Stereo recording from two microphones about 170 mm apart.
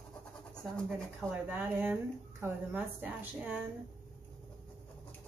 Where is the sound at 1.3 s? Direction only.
10° right (ahead or behind).